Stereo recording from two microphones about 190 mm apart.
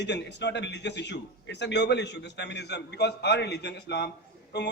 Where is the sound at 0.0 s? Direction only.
65° left (ahead or behind).